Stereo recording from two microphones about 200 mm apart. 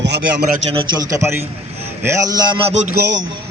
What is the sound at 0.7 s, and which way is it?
A man's voice, 20° right (ahead or behind).